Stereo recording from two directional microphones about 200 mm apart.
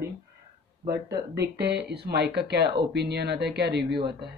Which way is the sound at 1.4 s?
55° right (ahead or behind).